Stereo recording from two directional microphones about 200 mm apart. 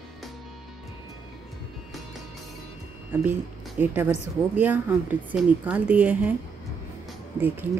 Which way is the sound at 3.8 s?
10° right (ahead or behind).